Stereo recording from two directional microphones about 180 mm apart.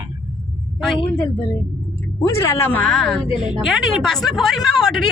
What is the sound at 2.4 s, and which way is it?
A woman's voice, 15° left (ahead or behind).